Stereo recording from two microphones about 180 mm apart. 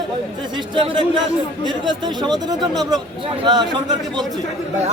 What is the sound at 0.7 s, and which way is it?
Speech, 25° right (ahead or behind).